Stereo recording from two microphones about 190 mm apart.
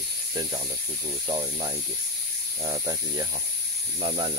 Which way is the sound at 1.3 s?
25° right (ahead or behind).